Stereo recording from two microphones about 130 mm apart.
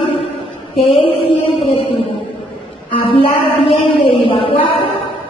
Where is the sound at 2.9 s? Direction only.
40° left (ahead or behind).